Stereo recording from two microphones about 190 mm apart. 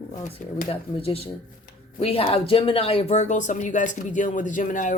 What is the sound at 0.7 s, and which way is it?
Speech, 30° left (ahead or behind).